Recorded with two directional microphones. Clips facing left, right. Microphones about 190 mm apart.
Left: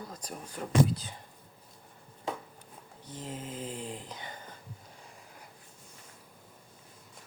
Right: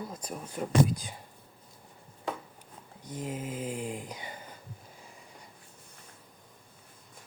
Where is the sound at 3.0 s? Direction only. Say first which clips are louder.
Right 4 dB; 10° right (ahead or behind).